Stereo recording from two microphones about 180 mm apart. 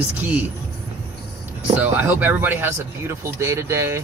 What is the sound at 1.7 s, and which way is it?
Speech, 10° right (ahead or behind).